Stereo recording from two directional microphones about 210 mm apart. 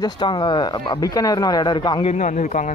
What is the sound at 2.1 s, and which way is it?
Speech, 35° left (ahead or behind).